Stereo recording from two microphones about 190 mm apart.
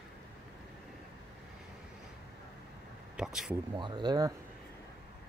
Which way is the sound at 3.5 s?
20° right (ahead or behind).